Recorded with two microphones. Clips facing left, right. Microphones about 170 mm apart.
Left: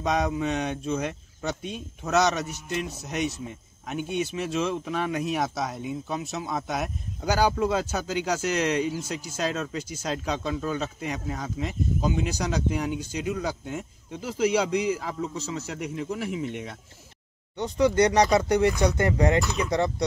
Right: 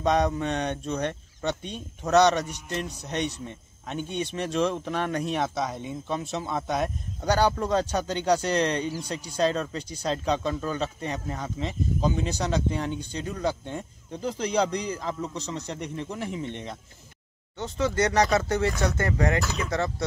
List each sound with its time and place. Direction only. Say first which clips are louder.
0.0 s speech: right 2 dB; 5° left (ahead or behind)